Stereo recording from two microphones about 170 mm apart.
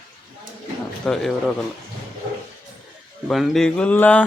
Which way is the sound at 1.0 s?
Centre (ahead or behind).